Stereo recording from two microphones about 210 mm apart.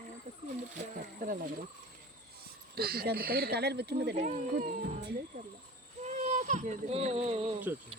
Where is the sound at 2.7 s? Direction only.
45° right (ahead or behind).